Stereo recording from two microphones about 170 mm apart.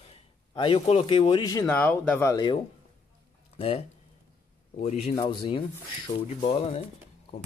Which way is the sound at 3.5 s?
35° left (ahead or behind).